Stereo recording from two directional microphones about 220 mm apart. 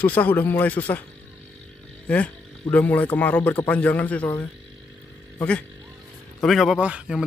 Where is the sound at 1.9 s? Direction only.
5° left (ahead or behind).